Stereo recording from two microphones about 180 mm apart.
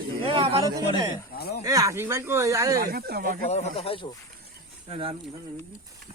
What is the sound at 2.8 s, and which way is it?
Speech, 55° right (ahead or behind).